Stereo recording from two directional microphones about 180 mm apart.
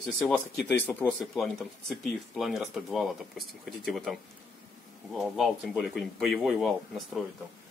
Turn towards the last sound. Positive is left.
turn(degrees=0)  # may be behind; listen again after turning